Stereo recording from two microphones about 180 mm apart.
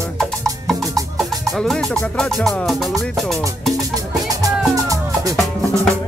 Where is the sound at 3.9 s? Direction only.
20° right (ahead or behind).